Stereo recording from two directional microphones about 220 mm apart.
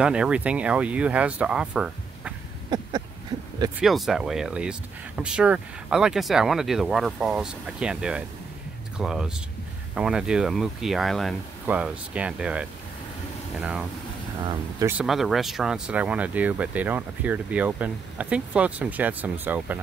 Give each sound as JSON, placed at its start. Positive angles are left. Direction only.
{"t": 0.0, "sound": "speech", "side_deg": -5}
{"t": 3.8, "sound": "speech", "side_deg": 0}
{"t": 14.4, "sound": "speech", "side_deg": -20}
{"t": 14.9, "sound": "speech", "side_deg": -5}